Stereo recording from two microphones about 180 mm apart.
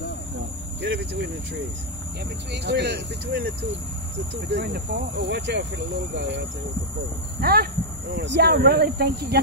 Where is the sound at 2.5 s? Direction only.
70° right (ahead or behind).